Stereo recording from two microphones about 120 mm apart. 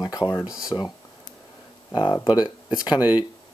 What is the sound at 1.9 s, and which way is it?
Speech, 40° left (ahead or behind).